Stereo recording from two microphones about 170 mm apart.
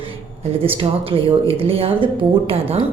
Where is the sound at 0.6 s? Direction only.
35° right (ahead or behind).